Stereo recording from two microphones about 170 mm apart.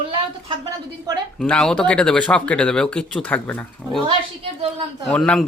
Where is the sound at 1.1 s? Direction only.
20° right (ahead or behind).